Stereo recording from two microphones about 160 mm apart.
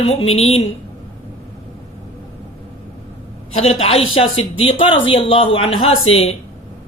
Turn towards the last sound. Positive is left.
turn(degrees=40)  # may be behind; listen again after turning